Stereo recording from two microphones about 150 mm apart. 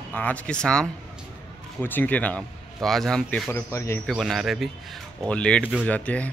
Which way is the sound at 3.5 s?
20° left (ahead or behind).